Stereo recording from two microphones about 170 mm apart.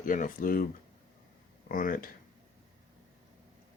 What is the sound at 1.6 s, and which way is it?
Speech, 55° left (ahead or behind).